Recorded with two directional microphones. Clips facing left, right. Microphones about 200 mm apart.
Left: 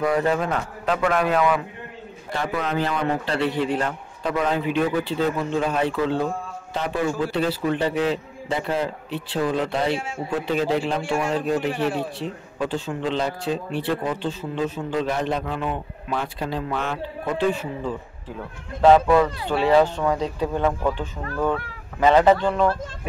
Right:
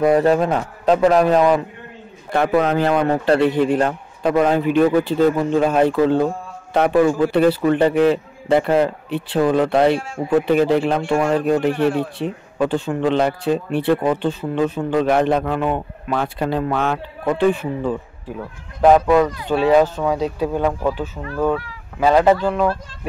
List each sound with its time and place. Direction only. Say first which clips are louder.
0.0 s a man's voice: right 7 dB; 35° right (ahead or behind)
2.3 s a man's voice: right 8 dB; 55° right (ahead or behind)
9.9 s a man's voice: right 4 dB; centre (ahead or behind)
10.4 s a man's voice: right 4 dB; 60° right (ahead or behind)
18.8 s speech: right 2 dB; 10° right (ahead or behind)